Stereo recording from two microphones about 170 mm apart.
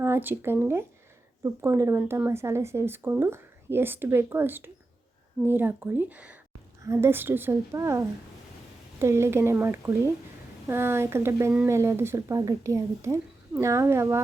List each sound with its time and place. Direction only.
0.0 s speech: 10° right (ahead or behind)